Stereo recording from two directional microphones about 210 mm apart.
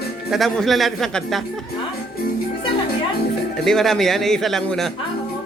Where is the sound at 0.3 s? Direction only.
Centre (ahead or behind).